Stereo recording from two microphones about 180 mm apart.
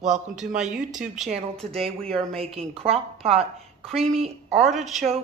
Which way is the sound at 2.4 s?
35° right (ahead or behind).